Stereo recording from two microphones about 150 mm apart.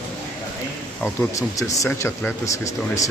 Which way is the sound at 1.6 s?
20° left (ahead or behind).